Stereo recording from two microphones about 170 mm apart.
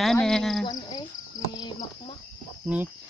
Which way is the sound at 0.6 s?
25° left (ahead or behind).